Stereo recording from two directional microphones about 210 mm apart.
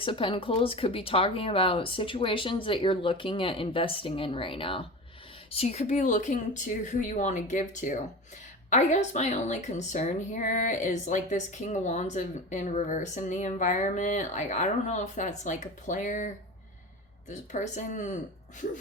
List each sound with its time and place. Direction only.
0.0 s a woman's voice: 25° left (ahead or behind)